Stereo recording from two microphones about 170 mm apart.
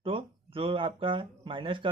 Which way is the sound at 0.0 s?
30° right (ahead or behind).